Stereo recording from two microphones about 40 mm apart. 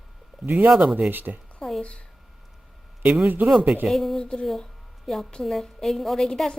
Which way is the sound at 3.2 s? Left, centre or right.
Right.